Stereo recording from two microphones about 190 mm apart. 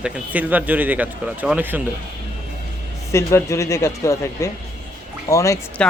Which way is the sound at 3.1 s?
15° left (ahead or behind).